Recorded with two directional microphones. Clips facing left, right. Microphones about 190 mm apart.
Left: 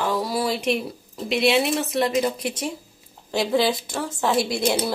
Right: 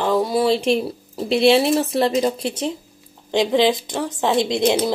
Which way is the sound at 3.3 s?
20° right (ahead or behind).